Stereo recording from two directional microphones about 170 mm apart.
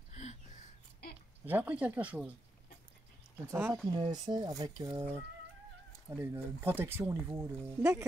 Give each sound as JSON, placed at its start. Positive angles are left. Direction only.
{"t": 0.1, "sound": "a sound", "side_deg": 40}
{"t": 1.0, "sound": "a sound", "side_deg": 65}
{"t": 1.4, "sound": "speech", "side_deg": -10}
{"t": 3.4, "sound": "speech", "side_deg": -15}
{"t": 3.9, "sound": "speech", "side_deg": -25}
{"t": 6.0, "sound": "speech", "side_deg": -15}